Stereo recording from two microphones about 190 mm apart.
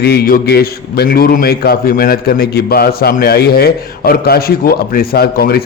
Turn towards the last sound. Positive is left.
turn(degrees=55)  # may be behind; listen again after turning